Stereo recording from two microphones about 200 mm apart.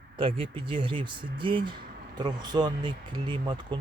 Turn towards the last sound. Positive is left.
turn(degrees=-25)  # may be behind; listen again after turning